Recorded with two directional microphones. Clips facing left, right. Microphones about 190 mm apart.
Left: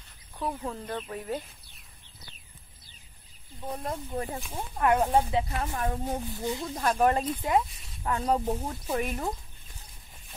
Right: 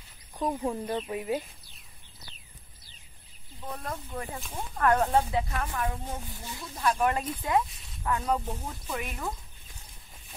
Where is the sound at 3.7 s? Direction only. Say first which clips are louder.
Left 4 dB; 25° left (ahead or behind).